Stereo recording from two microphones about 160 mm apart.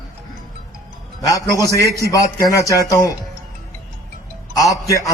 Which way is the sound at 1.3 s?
20° left (ahead or behind).